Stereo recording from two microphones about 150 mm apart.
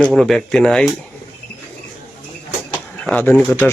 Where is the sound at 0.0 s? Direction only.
Centre (ahead or behind).